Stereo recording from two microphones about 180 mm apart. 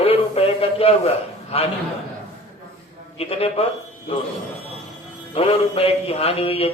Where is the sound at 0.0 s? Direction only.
35° left (ahead or behind).